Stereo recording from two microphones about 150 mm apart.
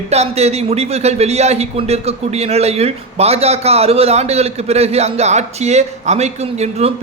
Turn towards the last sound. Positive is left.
turn(degrees=-45)  # may be behind; listen again after turning